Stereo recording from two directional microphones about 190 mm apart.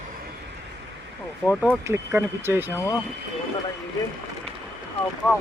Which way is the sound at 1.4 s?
5° right (ahead or behind).